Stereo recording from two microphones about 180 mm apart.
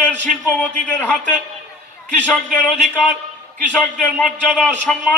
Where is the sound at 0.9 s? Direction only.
10° left (ahead or behind).